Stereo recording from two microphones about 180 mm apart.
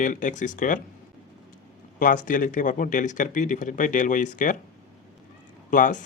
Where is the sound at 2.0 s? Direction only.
50° left (ahead or behind).